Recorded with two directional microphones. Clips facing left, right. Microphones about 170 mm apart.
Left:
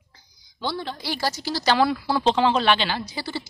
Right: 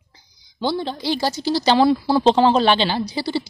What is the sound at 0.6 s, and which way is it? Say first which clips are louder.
Speech: right 6 dB; 30° right (ahead or behind).